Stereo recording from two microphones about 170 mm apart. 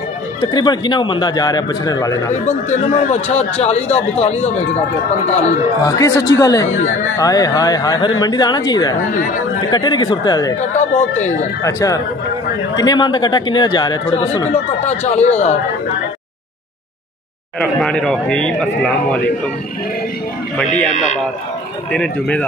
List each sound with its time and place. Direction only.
0.4 s a man's voice: 25° left (ahead or behind)
2.4 s speech: 45° left (ahead or behind)
5.8 s a man's voice: 20° left (ahead or behind)
6.7 s speech: 45° left (ahead or behind)
7.2 s a man's voice: 20° left (ahead or behind)
9.1 s speech: 50° left (ahead or behind)
9.7 s a man's voice: 25° left (ahead or behind)
10.6 s speech: 45° left (ahead or behind)
11.6 s a man's voice: 20° left (ahead or behind)
14.1 s speech: 40° left (ahead or behind)
17.6 s speech: 5° left (ahead or behind)
20.9 s speech: 45° left (ahead or behind)
21.9 s speech: 5° left (ahead or behind)